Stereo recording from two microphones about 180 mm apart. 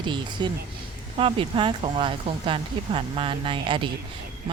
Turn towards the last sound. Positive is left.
turn(degrees=-30)  # may be behind; listen again after turning